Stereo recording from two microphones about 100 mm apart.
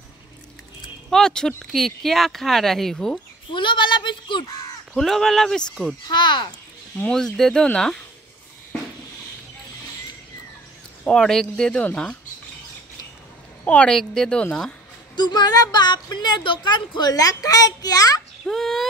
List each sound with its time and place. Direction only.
1.1 s speech: 5° left (ahead or behind)
3.5 s a woman's voice: 50° left (ahead or behind)
4.9 s speech: 5° left (ahead or behind)
6.0 s a woman's voice: 50° left (ahead or behind)
7.0 s speech: 5° left (ahead or behind)
11.1 s speech: 5° left (ahead or behind)
13.7 s speech: 10° left (ahead or behind)
15.1 s a woman's voice: 45° left (ahead or behind)
18.4 s speech: 5° left (ahead or behind)